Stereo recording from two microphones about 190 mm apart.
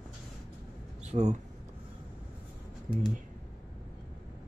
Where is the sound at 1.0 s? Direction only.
35° right (ahead or behind).